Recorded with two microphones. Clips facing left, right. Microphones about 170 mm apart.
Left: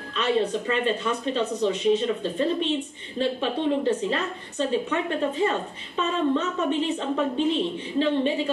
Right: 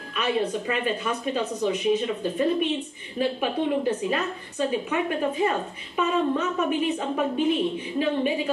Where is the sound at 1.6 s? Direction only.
30° left (ahead or behind).